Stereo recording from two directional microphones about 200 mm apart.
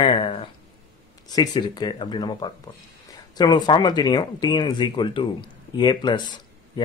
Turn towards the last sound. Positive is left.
turn(degrees=20)  # may be behind; listen again after turning